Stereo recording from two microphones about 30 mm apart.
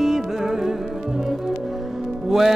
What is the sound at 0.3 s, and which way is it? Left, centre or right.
Music, centre.